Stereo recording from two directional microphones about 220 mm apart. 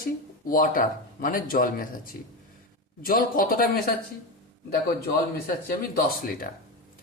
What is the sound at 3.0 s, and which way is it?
Speech, 40° left (ahead or behind).